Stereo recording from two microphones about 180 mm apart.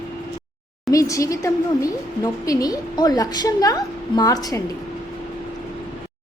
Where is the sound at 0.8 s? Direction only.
20° left (ahead or behind).